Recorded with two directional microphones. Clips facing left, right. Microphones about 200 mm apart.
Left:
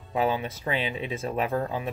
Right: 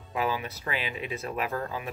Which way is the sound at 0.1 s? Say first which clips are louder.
Left 4 dB; 30° left (ahead or behind).